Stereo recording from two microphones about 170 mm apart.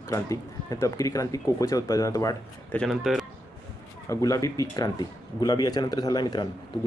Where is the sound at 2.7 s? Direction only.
Centre (ahead or behind).